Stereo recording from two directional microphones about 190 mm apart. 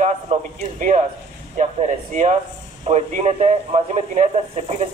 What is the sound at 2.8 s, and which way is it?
Speech, 35° right (ahead or behind).